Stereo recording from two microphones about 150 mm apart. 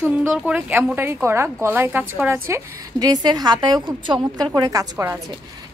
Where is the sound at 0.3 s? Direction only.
5° right (ahead or behind).